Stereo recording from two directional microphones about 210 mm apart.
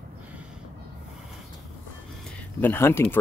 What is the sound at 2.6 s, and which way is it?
Speech, 10° left (ahead or behind).